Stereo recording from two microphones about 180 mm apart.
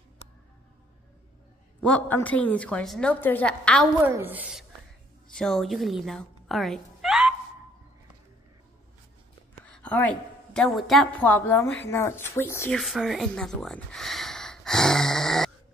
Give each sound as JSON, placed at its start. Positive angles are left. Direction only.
{"t": 1.8, "sound": "a woman's voice", "side_deg": 10}
{"t": 4.0, "sound": "a woman's voice", "side_deg": -10}
{"t": 9.7, "sound": "a sound", "side_deg": 5}
{"t": 10.5, "sound": "a woman's voice", "side_deg": 0}
{"t": 12.7, "sound": "speech", "side_deg": 0}